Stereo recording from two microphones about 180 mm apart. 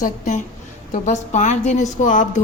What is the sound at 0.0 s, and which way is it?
A woman's voice, 45° left (ahead or behind).